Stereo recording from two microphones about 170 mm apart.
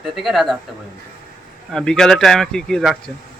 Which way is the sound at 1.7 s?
5° left (ahead or behind).